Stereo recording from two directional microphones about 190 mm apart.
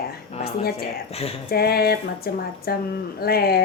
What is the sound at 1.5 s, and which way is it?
A woman's voice, 55° left (ahead or behind).